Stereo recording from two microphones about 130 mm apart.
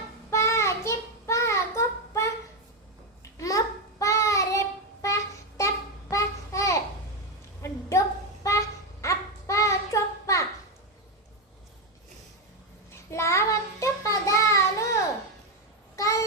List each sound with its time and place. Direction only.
0.3 s child singing: 20° left (ahead or behind)
3.3 s child singing: 25° left (ahead or behind)
5.0 s a sound: 25° left (ahead or behind)
8.4 s child singing: 25° left (ahead or behind)
12.9 s child singing: 20° left (ahead or behind)